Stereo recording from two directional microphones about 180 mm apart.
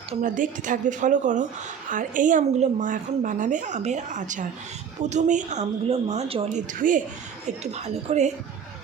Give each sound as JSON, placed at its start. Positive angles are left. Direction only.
{"t": 0.1, "sound": "a woman's voice", "side_deg": -45}